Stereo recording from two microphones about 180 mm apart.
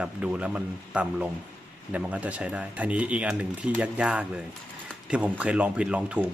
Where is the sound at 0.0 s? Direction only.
5° right (ahead or behind).